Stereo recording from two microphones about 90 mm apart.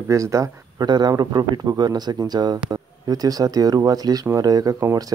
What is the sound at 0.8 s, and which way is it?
Speech, 50° right (ahead or behind).